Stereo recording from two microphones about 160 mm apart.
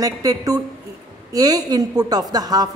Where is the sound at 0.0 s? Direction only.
20° right (ahead or behind).